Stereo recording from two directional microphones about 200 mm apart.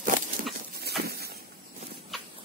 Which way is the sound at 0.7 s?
50° right (ahead or behind).